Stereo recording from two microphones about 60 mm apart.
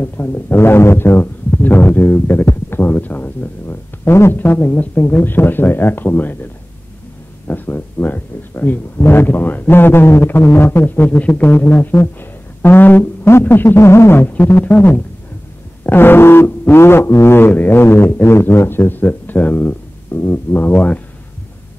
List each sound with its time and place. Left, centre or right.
0.0 s speech: left
0.6 s speech: left
7.4 s speech: left
11.1 s speech: left
13.3 s a sound: left
14.2 s speech: left
16.4 s a sound: left
17.5 s speech: left